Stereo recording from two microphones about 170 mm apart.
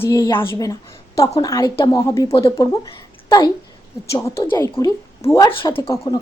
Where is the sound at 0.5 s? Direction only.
20° left (ahead or behind).